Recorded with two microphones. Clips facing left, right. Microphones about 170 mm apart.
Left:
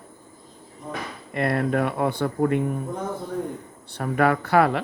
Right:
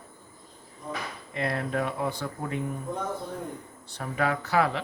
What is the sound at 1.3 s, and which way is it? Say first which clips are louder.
Speech: left 6 dB; 60° left (ahead or behind).